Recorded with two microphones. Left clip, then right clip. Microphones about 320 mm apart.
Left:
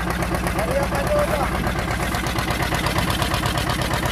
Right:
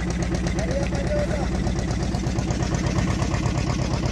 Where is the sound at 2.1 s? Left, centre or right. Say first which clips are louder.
Left 6 dB; left.